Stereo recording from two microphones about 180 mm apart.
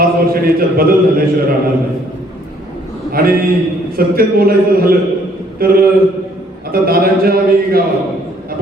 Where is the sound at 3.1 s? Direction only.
55° right (ahead or behind).